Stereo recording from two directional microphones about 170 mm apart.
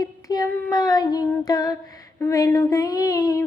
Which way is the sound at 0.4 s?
10° left (ahead or behind).